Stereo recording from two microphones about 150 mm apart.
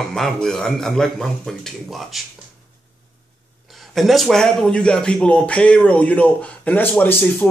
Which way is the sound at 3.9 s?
Centre (ahead or behind).